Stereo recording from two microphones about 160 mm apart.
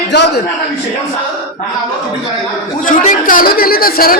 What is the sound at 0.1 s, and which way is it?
Speech, 90° left.